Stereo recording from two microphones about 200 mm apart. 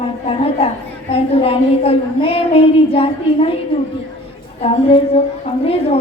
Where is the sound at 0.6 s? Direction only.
30° left (ahead or behind).